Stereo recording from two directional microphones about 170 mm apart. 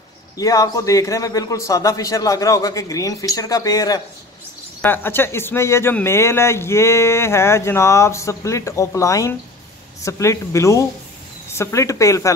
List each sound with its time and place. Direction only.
0.4 s a man's voice: 20° left (ahead or behind)